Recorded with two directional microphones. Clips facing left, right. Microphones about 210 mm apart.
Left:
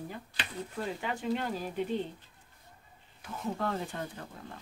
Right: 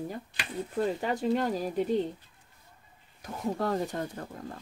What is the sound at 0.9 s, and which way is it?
Speech, 40° right (ahead or behind).